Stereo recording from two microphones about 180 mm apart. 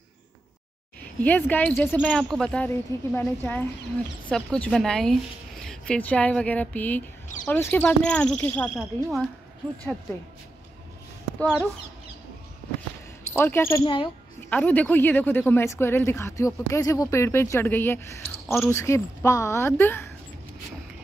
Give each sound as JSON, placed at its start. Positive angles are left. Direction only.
{"t": 1.2, "sound": "speech", "side_deg": 10}
{"t": 11.3, "sound": "speech", "side_deg": 5}
{"t": 13.3, "sound": "speech", "side_deg": 10}
{"t": 13.8, "sound": "speech", "side_deg": 25}
{"t": 14.5, "sound": "speech", "side_deg": 10}